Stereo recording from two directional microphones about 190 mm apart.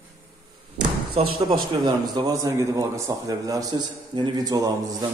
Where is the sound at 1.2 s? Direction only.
35° right (ahead or behind).